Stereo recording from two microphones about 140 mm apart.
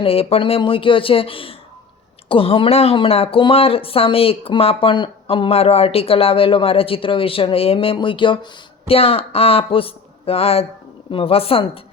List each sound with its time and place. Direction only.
0.0 s speech: 45° left (ahead or behind)